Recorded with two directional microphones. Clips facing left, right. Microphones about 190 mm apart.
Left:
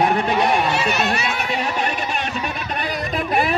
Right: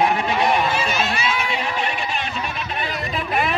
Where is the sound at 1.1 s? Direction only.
45° left (ahead or behind).